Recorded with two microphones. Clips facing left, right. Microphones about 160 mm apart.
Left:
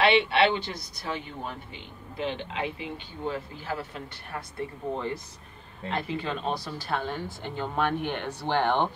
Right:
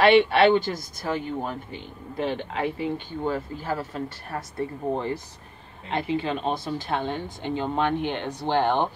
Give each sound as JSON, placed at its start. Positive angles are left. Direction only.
{"t": 0.0, "sound": "speech", "side_deg": -45}
{"t": 5.9, "sound": "speech", "side_deg": -25}